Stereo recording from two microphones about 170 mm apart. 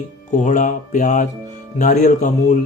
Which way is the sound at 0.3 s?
45° left (ahead or behind).